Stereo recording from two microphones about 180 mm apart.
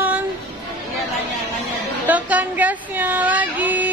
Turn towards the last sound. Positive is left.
turn(degrees=-10)  # may be behind; listen again after turning